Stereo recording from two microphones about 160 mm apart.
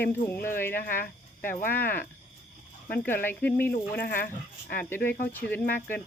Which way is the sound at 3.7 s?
70° left (ahead or behind).